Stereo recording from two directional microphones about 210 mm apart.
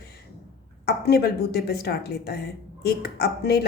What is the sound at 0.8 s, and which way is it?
A woman's voice, 50° left (ahead or behind).